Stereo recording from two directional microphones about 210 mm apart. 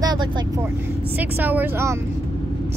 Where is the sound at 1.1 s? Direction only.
10° right (ahead or behind).